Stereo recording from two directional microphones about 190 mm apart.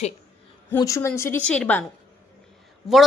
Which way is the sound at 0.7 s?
15° left (ahead or behind).